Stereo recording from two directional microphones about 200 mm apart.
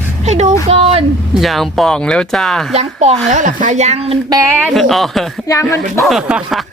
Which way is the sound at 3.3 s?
40° right (ahead or behind).